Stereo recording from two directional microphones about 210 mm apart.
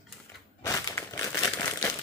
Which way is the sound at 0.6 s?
15° left (ahead or behind).